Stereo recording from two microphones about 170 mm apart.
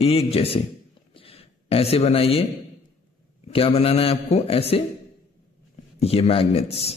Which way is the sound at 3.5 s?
35° left (ahead or behind).